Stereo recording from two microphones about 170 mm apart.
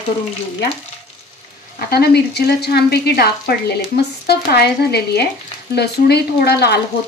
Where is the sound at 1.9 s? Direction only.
70° left (ahead or behind).